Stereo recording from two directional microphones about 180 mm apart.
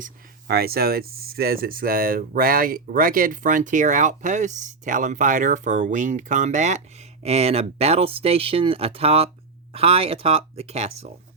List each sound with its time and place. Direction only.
0.0 s speech: 60° right (ahead or behind); by 11.1 s 35° right (ahead or behind)